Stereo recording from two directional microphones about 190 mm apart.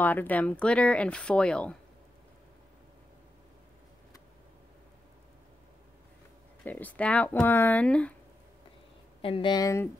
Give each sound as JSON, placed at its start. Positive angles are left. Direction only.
{"t": 0.0, "sound": "speech", "side_deg": 10}
{"t": 6.6, "sound": "speech", "side_deg": 10}
{"t": 9.2, "sound": "speech", "side_deg": 25}